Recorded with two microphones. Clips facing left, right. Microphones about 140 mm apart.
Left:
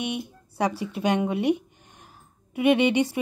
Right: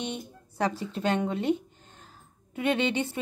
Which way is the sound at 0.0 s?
10° left (ahead or behind).